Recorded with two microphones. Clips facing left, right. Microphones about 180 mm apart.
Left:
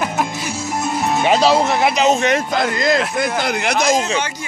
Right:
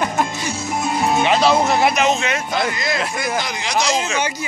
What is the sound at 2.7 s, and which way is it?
A man's voice, 50° left (ahead or behind).